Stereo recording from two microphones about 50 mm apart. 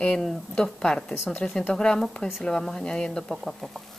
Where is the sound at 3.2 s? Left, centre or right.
Centre.